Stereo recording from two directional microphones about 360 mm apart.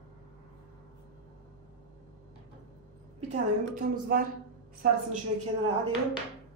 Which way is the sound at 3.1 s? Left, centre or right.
Right.